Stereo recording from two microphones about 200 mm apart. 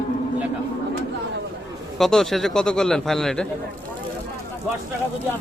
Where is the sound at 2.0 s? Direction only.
Centre (ahead or behind).